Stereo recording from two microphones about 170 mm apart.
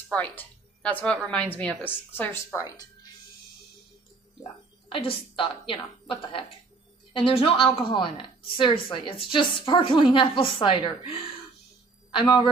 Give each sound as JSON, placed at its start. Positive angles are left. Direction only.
{"t": 0.1, "sound": "speech", "side_deg": 10}
{"t": 4.9, "sound": "a woman's voice", "side_deg": 30}